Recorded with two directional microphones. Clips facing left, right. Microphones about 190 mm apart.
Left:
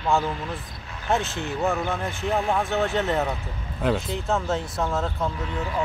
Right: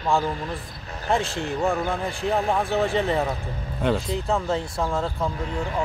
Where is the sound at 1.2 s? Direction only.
30° right (ahead or behind).